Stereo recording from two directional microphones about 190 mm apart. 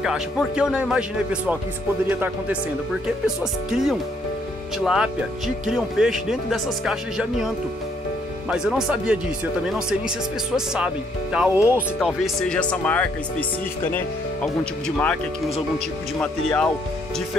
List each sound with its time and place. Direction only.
0.0 s speech: 5° right (ahead or behind)
8.5 s speech: 5° right (ahead or behind)
16.2 s speech: 5° left (ahead or behind)